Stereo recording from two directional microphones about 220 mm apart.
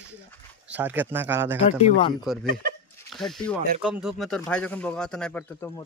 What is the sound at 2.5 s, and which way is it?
Speech, 40° right (ahead or behind).